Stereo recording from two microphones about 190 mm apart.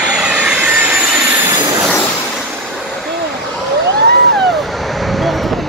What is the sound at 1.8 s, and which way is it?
Vehicle, 10° left (ahead or behind).